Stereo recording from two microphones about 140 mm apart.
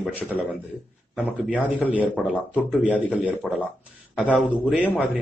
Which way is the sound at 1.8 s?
10° right (ahead or behind).